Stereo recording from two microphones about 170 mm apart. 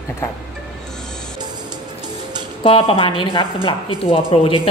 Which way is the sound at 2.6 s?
30° left (ahead or behind).